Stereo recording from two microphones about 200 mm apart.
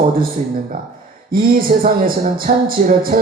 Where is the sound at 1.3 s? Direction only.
45° right (ahead or behind).